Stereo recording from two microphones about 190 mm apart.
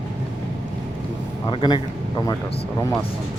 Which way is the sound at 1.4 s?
25° left (ahead or behind).